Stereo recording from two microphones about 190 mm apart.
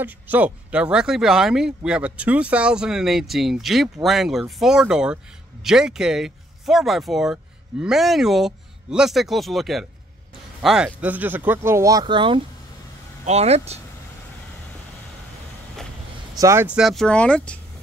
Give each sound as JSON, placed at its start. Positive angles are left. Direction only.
{"t": 0.0, "sound": "speech", "side_deg": -10}
{"t": 16.3, "sound": "speech", "side_deg": -15}